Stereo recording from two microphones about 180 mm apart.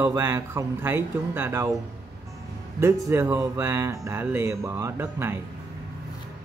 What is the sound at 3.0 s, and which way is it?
Speech, 15° right (ahead or behind).